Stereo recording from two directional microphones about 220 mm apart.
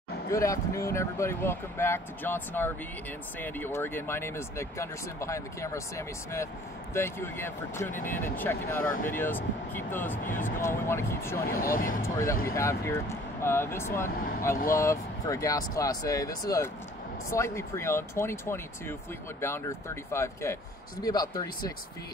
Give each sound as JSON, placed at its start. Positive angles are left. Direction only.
{"t": 0.3, "sound": "speech", "side_deg": 15}
{"t": 10.2, "sound": "speech", "side_deg": 35}
{"t": 10.9, "sound": "speech", "side_deg": 10}
{"t": 11.4, "sound": "speech", "side_deg": 40}
{"t": 12.0, "sound": "speech", "side_deg": 10}
{"t": 14.0, "sound": "speech", "side_deg": 40}
{"t": 14.8, "sound": "speech", "side_deg": 15}